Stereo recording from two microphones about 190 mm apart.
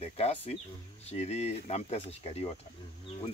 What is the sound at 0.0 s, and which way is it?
Speech, 35° left (ahead or behind).